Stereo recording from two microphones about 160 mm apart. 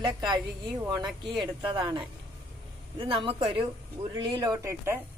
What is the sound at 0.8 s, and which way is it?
Speech, 20° right (ahead or behind).